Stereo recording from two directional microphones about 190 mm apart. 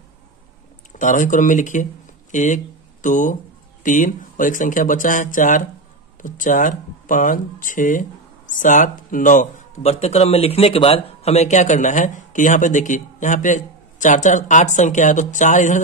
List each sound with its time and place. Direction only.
0.9 s speech: 40° left (ahead or behind)